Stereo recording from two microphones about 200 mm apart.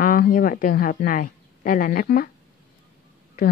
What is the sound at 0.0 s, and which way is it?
Speech, 45° left (ahead or behind).